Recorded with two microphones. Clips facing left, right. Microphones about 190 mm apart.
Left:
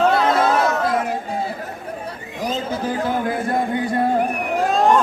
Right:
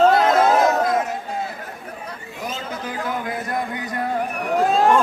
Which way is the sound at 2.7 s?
30° left (ahead or behind).